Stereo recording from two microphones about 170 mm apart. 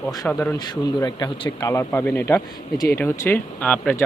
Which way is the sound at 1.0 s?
25° left (ahead or behind).